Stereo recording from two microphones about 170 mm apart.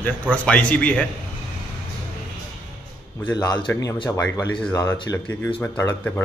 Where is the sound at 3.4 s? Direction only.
25° left (ahead or behind).